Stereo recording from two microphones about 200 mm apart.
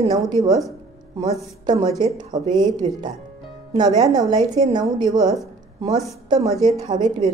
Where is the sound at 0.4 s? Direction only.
15° right (ahead or behind).